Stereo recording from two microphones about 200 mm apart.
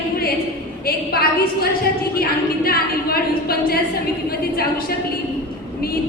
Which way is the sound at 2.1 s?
50° left (ahead or behind).